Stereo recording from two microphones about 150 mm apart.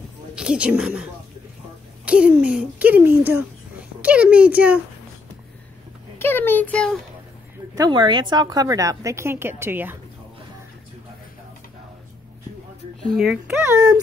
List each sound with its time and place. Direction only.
0.4 s speech: 5° right (ahead or behind)
6.1 s a child's voice: 15° left (ahead or behind)
7.7 s a woman's voice: 30° right (ahead or behind)
13.0 s speech: centre (ahead or behind)